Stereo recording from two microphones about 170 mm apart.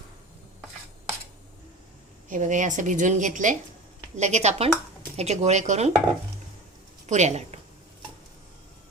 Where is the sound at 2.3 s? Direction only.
50° right (ahead or behind).